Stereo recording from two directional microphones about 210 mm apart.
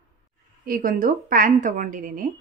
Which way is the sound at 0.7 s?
40° right (ahead or behind).